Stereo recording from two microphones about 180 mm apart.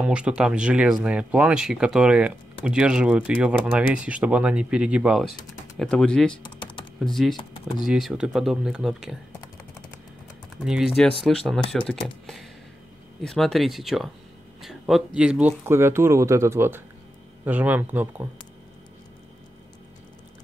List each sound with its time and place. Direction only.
0.0 s speech: 5° right (ahead or behind)
6.6 s typing: 25° left (ahead or behind)
7.0 s speech: centre (ahead or behind)
10.6 s speech: centre (ahead or behind)